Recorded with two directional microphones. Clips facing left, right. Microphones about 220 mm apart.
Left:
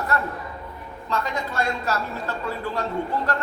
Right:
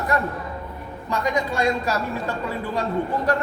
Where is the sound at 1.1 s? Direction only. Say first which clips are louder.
Right 4 dB; 15° right (ahead or behind).